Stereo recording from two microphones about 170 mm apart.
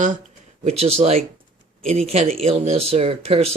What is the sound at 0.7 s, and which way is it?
Speech, 40° right (ahead or behind).